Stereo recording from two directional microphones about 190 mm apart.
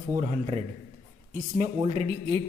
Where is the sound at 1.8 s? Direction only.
30° right (ahead or behind).